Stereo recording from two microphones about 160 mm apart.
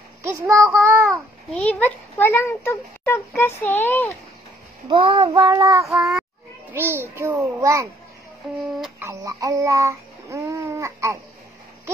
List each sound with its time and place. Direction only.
0.2 s child singing: 20° right (ahead or behind)
0.7 s a child's voice: 15° right (ahead or behind)
1.5 s a child's voice: 10° left (ahead or behind)
4.8 s child singing: 30° right (ahead or behind); by 6.2 s 10° right (ahead or behind)
6.7 s a child's voice: 15° right (ahead or behind)
9.0 s speech: 20° right (ahead or behind)